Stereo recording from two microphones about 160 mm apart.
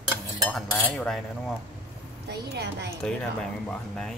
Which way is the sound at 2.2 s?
90° right.